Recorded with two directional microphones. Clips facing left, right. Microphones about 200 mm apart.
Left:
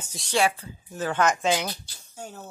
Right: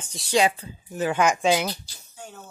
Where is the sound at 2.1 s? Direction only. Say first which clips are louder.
Left 3 dB; 40° left (ahead or behind).